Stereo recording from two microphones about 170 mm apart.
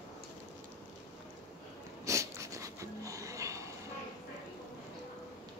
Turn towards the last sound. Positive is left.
turn(degrees=-20)  # may be behind; listen again after turning